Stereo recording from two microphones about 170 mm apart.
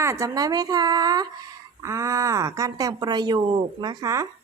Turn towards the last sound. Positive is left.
turn(degrees=-20)  # may be behind; listen again after turning